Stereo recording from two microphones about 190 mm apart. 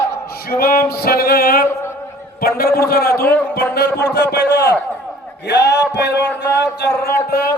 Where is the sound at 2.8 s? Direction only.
50° left (ahead or behind).